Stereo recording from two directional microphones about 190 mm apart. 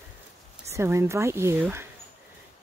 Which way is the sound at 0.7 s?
15° right (ahead or behind).